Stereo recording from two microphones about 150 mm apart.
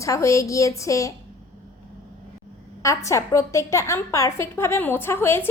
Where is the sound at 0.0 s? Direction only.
20° left (ahead or behind).